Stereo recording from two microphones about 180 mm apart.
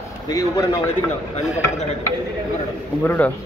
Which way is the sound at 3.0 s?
10° left (ahead or behind).